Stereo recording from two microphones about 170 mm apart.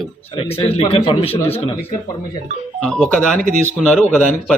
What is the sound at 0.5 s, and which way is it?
A man's voice, 35° left (ahead or behind).